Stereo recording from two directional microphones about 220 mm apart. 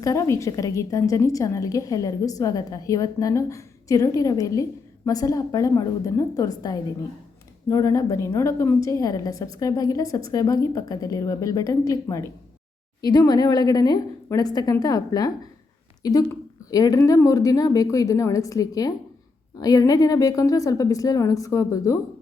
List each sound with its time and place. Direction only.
0.0 s a woman's voice: 15° left (ahead or behind)